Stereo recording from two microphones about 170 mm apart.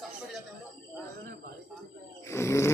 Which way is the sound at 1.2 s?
60° right (ahead or behind).